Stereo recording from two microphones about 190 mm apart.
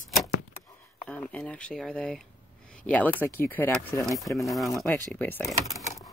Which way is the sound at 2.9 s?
10° left (ahead or behind).